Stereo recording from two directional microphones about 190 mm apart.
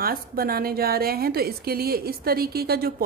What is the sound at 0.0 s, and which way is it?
A woman's voice, 50° right (ahead or behind).